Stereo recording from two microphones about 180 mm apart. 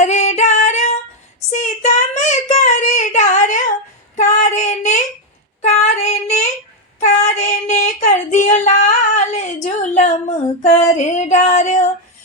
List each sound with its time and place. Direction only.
0.0 s singing: 40° left (ahead or behind)
1.5 s child singing: 40° left (ahead or behind)
9.1 s a sound: 40° left (ahead or behind)